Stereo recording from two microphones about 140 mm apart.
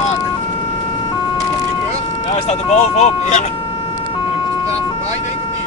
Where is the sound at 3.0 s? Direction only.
60° left (ahead or behind).